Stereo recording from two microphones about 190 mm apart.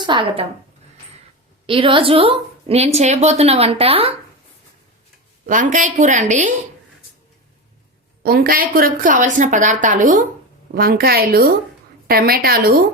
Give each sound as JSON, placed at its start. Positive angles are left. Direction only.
{"t": 0.0, "sound": "a woman's voice", "side_deg": -25}
{"t": 1.6, "sound": "a woman's voice", "side_deg": -30}
{"t": 5.5, "sound": "a woman's voice", "side_deg": -40}
{"t": 8.2, "sound": "a woman's voice", "side_deg": -50}